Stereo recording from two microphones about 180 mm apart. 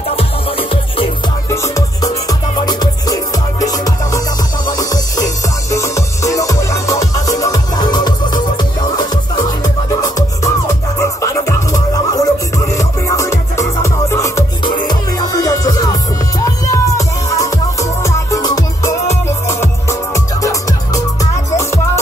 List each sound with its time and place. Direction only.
0.1 s music: 30° left (ahead or behind)
1.5 s music: 15° left (ahead or behind)